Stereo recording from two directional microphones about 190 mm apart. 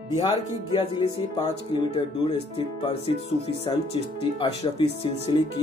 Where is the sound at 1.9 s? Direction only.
30° left (ahead or behind).